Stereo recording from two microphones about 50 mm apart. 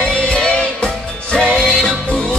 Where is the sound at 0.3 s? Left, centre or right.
Left.